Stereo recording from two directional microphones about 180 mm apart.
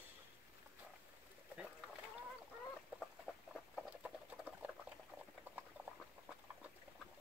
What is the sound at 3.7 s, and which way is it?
Patter, 5° right (ahead or behind).